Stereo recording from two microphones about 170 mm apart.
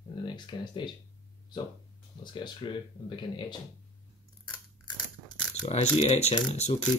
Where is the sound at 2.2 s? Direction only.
30° left (ahead or behind).